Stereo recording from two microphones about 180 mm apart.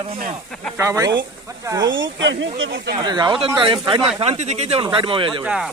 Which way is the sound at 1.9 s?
90° right.